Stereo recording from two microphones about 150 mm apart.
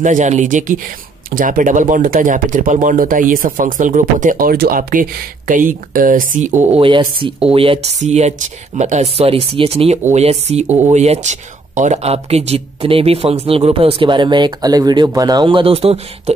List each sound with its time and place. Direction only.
0.0 s speech: 55° right (ahead or behind)
6.8 s speech: 35° right (ahead or behind)
8.0 s speech: 50° right (ahead or behind)